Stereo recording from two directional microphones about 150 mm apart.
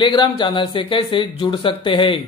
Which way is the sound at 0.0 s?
30° left (ahead or behind).